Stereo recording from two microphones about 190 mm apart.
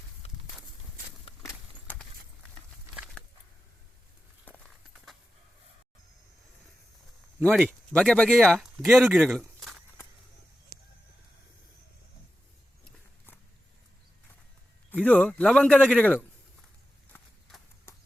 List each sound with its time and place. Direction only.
0.2 s horse: 30° left (ahead or behind)
1.5 s a sound: 10° left (ahead or behind)
7.9 s speech: 5° left (ahead or behind)
14.8 s a man's voice: 5° left (ahead or behind)
17.1 s horse: 10° left (ahead or behind)